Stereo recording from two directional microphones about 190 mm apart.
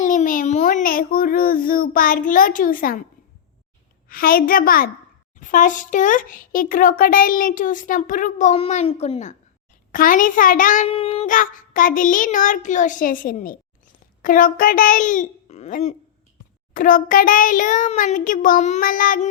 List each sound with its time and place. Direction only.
0.0 s a sound: 40° left (ahead or behind)
4.1 s a child's voice: 50° left (ahead or behind); by 9.3 s 35° left (ahead or behind)
9.9 s a child's voice: 45° left (ahead or behind)
10.8 s a child's voice: 30° left (ahead or behind); by 19.3 s 45° left (ahead or behind)